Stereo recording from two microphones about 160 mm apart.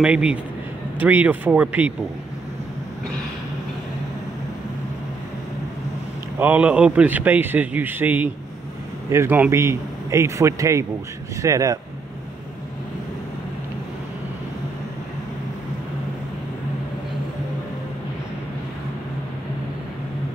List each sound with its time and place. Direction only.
0.0 s a man's voice: 5° right (ahead or behind)
6.3 s a man's voice: 10° right (ahead or behind)